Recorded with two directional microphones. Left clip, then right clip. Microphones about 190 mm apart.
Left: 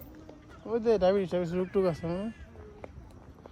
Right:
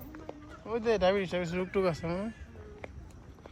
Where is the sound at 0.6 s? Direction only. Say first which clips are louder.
Left 2 dB; 25° left (ahead or behind).